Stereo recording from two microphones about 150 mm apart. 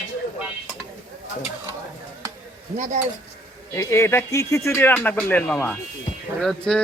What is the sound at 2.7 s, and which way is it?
Speech, 55° right (ahead or behind).